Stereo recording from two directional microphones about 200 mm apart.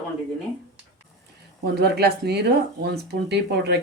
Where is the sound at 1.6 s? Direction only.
55° right (ahead or behind).